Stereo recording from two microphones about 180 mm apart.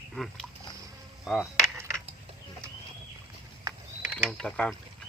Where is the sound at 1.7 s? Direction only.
15° right (ahead or behind).